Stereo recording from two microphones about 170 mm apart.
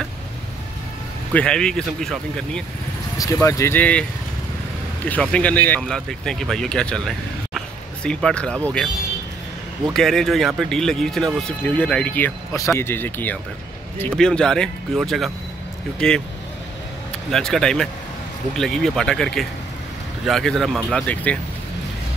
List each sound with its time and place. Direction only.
1.3 s speech: 5° left (ahead or behind)
3.2 s speech: 20° left (ahead or behind)
5.0 s speech: 10° left (ahead or behind)
9.9 s speech: centre (ahead or behind)
17.3 s speech: 5° left (ahead or behind)